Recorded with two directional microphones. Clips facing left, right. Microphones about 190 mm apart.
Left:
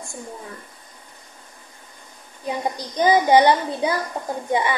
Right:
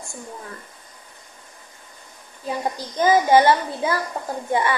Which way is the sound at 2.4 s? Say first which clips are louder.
Even; 15° left (ahead or behind).